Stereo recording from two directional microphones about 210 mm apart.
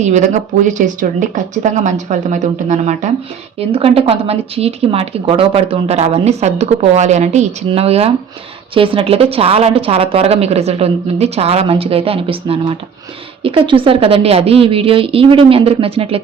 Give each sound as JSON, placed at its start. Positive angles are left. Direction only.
{"t": 0.0, "sound": "speech", "side_deg": -35}